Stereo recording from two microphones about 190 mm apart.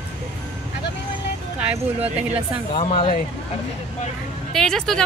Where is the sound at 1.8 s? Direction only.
30° right (ahead or behind).